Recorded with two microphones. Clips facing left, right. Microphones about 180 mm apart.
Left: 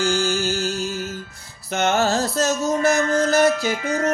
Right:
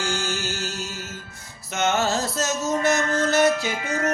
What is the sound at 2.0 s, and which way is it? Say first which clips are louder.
Music: left 4 dB; 35° left (ahead or behind).